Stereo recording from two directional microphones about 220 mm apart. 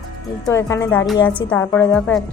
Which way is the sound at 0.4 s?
15° left (ahead or behind).